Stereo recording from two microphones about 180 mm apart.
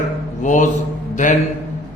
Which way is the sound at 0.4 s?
45° left (ahead or behind).